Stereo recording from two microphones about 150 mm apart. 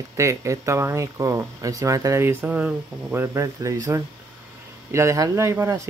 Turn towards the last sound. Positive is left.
turn(degrees=-20)  # may be behind; listen again after turning